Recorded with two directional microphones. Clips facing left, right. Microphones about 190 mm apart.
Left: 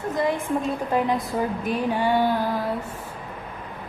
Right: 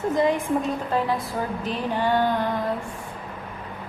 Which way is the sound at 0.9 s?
15° left (ahead or behind).